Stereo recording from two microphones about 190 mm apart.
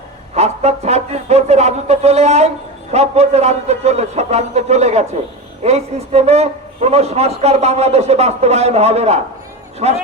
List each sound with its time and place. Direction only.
0.3 s a man's voice: 35° right (ahead or behind)